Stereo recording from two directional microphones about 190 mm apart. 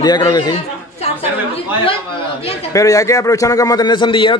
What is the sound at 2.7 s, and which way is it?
A man's voice, 15° left (ahead or behind).